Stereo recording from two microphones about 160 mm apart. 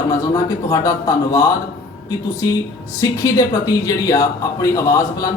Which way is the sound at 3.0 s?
20° left (ahead or behind).